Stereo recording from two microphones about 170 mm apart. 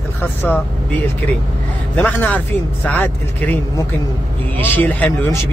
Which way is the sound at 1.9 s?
10° left (ahead or behind).